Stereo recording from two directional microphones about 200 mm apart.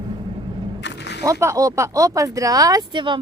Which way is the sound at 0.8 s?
60° left (ahead or behind).